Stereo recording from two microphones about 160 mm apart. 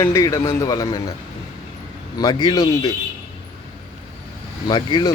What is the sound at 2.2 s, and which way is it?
Speech, 25° left (ahead or behind).